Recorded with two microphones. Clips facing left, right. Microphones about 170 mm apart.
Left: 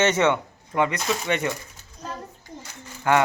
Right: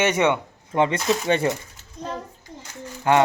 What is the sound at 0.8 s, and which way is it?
Speech, 30° right (ahead or behind).